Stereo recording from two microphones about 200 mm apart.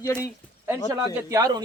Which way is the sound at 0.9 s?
15° right (ahead or behind).